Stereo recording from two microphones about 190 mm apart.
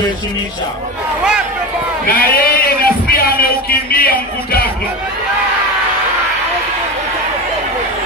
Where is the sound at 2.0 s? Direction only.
50° left (ahead or behind).